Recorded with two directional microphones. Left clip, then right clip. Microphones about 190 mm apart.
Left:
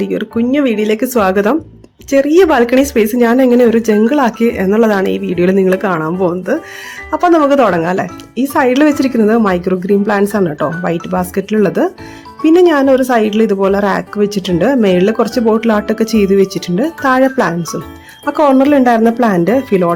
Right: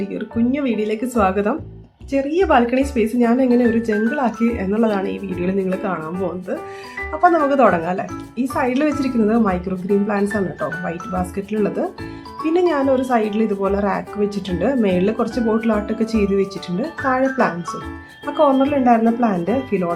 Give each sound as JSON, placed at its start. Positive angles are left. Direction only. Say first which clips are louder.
{"t": 0.1, "sound": "speech", "louder": "left 7 dB", "side_deg": 50}